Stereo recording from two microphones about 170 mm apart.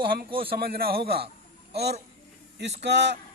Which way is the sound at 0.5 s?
60° right (ahead or behind).